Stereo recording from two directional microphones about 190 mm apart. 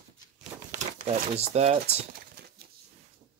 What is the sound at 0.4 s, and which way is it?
Crumpling, 35° right (ahead or behind).